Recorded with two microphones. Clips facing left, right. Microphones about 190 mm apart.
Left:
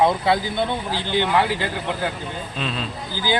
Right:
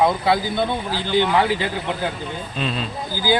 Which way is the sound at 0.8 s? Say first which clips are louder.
Right 2 dB; 20° left (ahead or behind).